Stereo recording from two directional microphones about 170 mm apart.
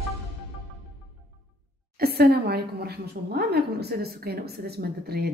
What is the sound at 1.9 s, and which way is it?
A woman's voice, 65° right (ahead or behind).